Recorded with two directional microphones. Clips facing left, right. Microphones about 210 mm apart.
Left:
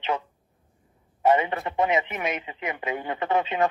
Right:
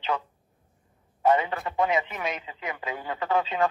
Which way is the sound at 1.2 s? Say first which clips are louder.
Left 2 dB; 20° left (ahead or behind).